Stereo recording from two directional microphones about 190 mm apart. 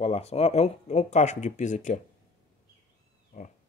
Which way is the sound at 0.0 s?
35° left (ahead or behind).